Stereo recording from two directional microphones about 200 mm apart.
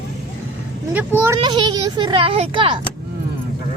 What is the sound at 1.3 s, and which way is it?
Speech, 20° right (ahead or behind).